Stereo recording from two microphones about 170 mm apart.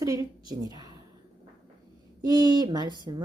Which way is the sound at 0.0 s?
20° right (ahead or behind).